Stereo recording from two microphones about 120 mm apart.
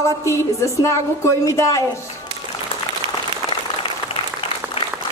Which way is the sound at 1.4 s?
25° left (ahead or behind).